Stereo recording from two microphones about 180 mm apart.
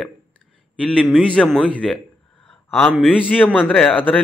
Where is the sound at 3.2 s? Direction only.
10° left (ahead or behind).